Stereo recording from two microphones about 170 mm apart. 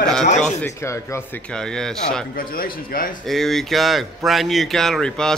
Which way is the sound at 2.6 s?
55° left (ahead or behind).